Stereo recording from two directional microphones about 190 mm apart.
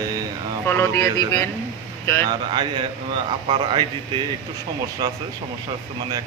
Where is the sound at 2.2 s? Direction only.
25° right (ahead or behind).